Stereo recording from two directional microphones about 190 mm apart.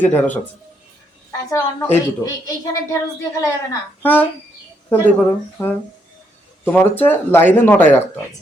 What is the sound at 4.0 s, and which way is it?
Speech, 10° left (ahead or behind).